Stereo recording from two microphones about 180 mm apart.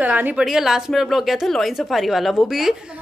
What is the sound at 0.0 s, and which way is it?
Speech, 10° right (ahead or behind).